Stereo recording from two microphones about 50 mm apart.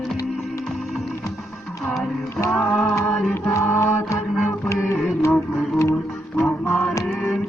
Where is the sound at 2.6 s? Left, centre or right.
Left.